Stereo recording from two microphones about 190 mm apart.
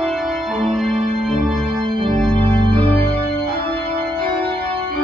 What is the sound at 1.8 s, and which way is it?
Organ, 30° right (ahead or behind).